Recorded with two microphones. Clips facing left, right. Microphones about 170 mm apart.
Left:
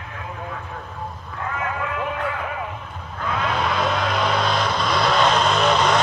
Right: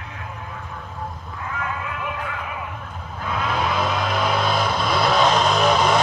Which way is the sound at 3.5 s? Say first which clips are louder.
Right 1 dB; 5° right (ahead or behind).